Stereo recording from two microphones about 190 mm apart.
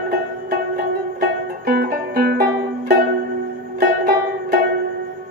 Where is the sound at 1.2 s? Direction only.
55° right (ahead or behind).